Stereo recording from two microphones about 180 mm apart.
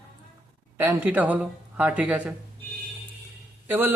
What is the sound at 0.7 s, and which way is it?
Speech, 10° right (ahead or behind).